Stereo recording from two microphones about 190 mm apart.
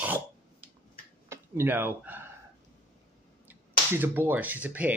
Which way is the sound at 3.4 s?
10° right (ahead or behind).